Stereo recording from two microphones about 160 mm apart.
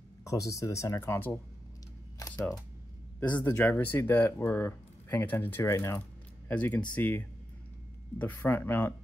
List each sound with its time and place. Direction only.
0.2 s speech: 20° left (ahead or behind)
2.1 s camera: 15° left (ahead or behind)
3.4 s speech: 10° left (ahead or behind)